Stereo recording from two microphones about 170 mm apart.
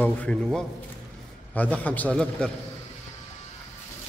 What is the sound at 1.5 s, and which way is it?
Speech, 10° left (ahead or behind).